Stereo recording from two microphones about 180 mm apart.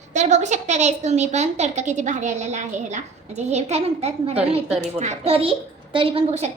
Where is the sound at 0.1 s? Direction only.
40° right (ahead or behind).